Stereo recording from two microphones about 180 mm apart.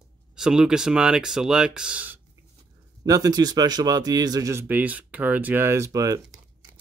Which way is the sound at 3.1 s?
20° right (ahead or behind).